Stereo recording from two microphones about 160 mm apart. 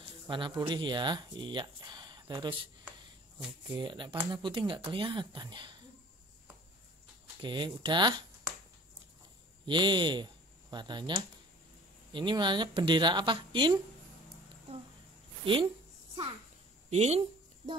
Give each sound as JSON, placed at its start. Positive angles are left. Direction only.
{"t": 0.0, "sound": "speech", "side_deg": -30}
{"t": 3.7, "sound": "speech", "side_deg": -30}
{"t": 7.4, "sound": "speech", "side_deg": -30}
{"t": 9.7, "sound": "speech", "side_deg": -30}
{"t": 15.4, "sound": "speech", "side_deg": -30}
{"t": 16.9, "sound": "speech", "side_deg": -40}